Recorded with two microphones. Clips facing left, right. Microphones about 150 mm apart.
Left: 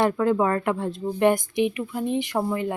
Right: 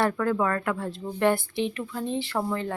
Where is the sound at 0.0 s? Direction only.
20° left (ahead or behind).